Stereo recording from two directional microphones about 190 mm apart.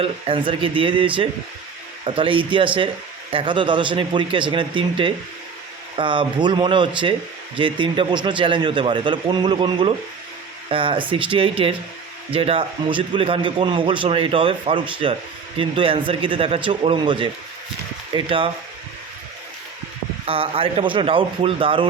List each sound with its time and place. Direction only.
0.0 s a man's voice: 25° right (ahead or behind)
20.2 s a man's voice: 30° right (ahead or behind)